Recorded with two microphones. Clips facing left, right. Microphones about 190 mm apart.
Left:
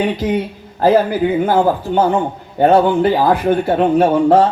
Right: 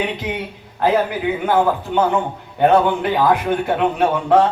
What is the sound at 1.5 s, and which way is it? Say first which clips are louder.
Speech: left 3 dB; 35° left (ahead or behind).